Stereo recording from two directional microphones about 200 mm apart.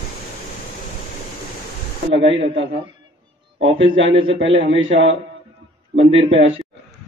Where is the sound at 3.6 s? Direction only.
30° right (ahead or behind).